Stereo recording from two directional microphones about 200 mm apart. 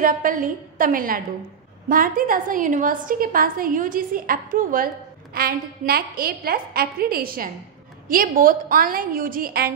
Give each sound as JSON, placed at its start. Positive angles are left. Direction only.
{"t": 0.0, "sound": "a woman's voice", "side_deg": -45}